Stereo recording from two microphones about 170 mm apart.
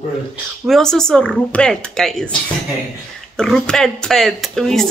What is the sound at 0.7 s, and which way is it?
Speech, centre (ahead or behind).